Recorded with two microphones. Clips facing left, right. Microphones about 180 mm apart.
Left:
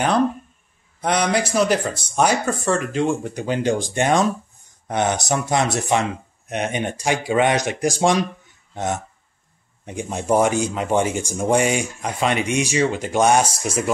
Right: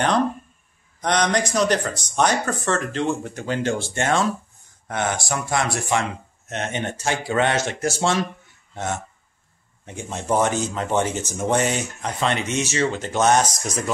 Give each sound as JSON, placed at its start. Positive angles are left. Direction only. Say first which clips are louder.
{"t": 1.0, "sound": "speech", "louder": "left 1 dB", "side_deg": 10}